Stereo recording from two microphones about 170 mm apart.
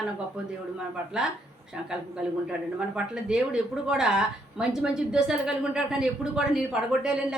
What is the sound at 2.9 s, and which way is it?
A woman's voice, 5° right (ahead or behind).